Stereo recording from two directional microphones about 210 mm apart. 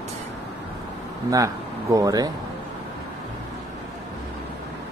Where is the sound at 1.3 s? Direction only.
15° right (ahead or behind).